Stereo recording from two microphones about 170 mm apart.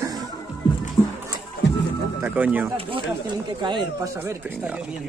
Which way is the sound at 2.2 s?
10° right (ahead or behind).